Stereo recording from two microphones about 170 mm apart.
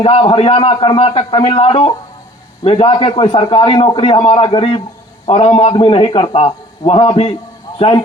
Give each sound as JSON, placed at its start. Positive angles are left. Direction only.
{"t": 0.0, "sound": "a man's voice", "side_deg": 30}